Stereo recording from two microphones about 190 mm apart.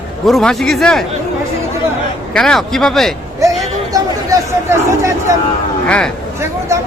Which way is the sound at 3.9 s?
15° right (ahead or behind).